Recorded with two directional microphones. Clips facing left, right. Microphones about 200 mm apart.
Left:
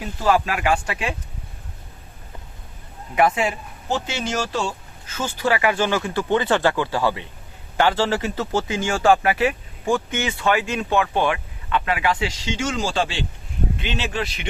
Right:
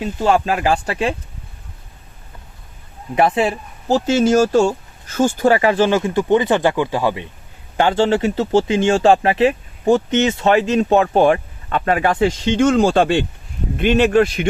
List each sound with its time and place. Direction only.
0.0 s speech: 25° right (ahead or behind)
3.2 s speech: 30° right (ahead or behind)
5.7 s speech: 20° right (ahead or behind)
10.4 s speech: 35° right (ahead or behind); by 14.4 s 50° right (ahead or behind)